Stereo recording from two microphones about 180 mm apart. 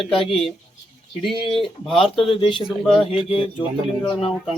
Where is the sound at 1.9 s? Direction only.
30° left (ahead or behind).